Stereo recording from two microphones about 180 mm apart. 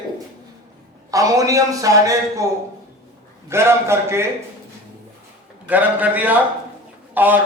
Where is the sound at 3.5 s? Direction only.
15° right (ahead or behind).